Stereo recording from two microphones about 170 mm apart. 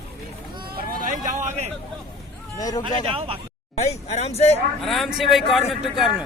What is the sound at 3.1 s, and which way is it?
Speech, 35° right (ahead or behind).